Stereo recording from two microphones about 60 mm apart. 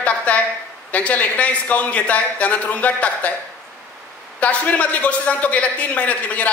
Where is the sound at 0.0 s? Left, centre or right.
Left.